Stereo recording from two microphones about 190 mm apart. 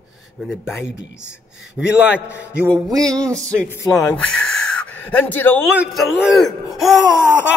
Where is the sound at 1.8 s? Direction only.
Centre (ahead or behind).